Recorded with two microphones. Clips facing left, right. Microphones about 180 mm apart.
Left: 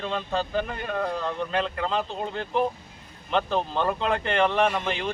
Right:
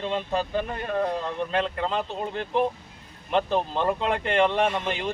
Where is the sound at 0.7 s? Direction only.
30° right (ahead or behind).